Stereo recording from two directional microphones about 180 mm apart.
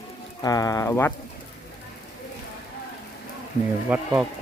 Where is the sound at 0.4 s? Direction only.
20° left (ahead or behind).